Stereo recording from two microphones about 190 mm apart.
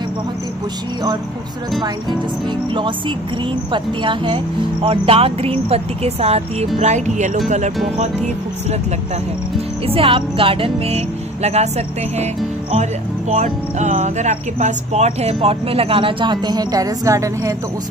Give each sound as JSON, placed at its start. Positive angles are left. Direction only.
{"t": 3.7, "sound": "music", "side_deg": -25}
{"t": 4.8, "sound": "speech", "side_deg": -30}
{"t": 9.8, "sound": "music", "side_deg": -30}
{"t": 11.4, "sound": "speech", "side_deg": -35}
{"t": 13.3, "sound": "speech", "side_deg": -40}